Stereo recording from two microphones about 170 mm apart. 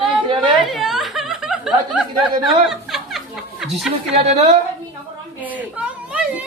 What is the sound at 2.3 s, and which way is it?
Speech, 30° right (ahead or behind).